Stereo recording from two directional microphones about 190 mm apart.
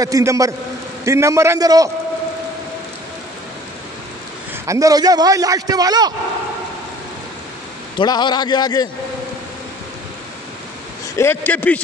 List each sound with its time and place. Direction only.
0.0 s a man's voice: 15° right (ahead or behind)
4.6 s a man's voice: 15° right (ahead or behind)
8.0 s a man's voice: 25° left (ahead or behind)
11.1 s a man's voice: 10° left (ahead or behind)